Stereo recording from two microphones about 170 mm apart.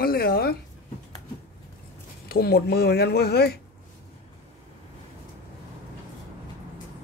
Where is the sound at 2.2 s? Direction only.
65° left (ahead or behind).